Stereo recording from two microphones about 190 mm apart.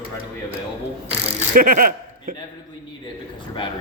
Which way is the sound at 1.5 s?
50° right (ahead or behind).